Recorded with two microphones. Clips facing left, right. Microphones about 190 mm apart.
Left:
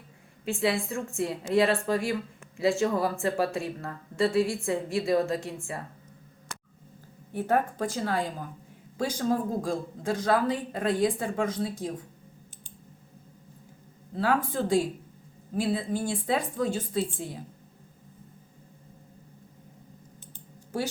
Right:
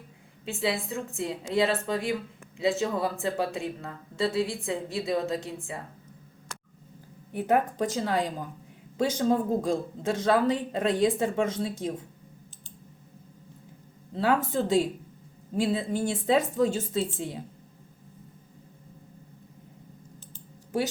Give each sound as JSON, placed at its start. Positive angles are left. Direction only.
{"t": 0.4, "sound": "speech", "side_deg": 0}
{"t": 5.5, "sound": "a man's voice", "side_deg": -20}
{"t": 7.3, "sound": "a man's voice", "side_deg": -15}
{"t": 14.2, "sound": "a man's voice", "side_deg": -25}